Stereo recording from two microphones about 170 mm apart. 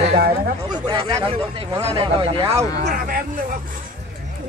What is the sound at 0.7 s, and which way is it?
Speech, 25° right (ahead or behind).